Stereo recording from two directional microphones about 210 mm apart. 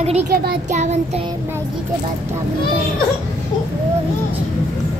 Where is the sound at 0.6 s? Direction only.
35° right (ahead or behind).